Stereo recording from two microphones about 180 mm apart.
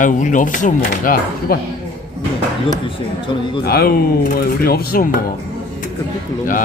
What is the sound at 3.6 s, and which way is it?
Speech, 55° left (ahead or behind).